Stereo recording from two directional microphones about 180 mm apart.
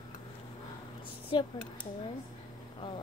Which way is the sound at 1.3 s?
25° left (ahead or behind).